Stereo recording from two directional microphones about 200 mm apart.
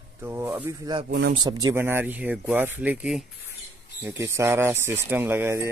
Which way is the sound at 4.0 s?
15° right (ahead or behind).